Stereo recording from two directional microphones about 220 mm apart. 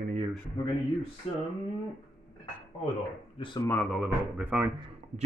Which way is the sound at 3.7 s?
Centre (ahead or behind).